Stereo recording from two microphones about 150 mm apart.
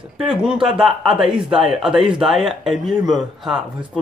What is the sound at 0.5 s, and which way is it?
Speech, 35° right (ahead or behind).